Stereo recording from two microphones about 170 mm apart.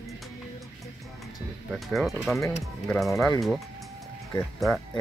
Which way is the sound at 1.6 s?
Centre (ahead or behind).